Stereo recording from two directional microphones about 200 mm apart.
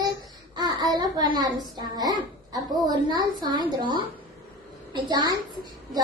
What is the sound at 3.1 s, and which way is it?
Speech, 20° right (ahead or behind).